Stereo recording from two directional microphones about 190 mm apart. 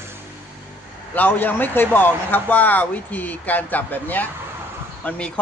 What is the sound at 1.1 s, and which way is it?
Speech, 10° left (ahead or behind).